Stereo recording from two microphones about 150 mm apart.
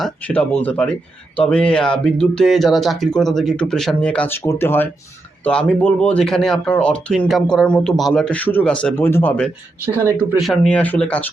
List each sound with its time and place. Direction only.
0.3 s speech: 10° left (ahead or behind)
10.3 s speech: centre (ahead or behind)